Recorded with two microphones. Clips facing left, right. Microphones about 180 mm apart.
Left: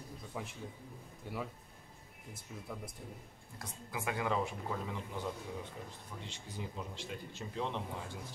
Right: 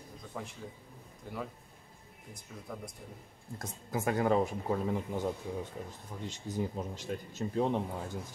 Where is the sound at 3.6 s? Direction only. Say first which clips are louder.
Right 7 dB; 45° right (ahead or behind).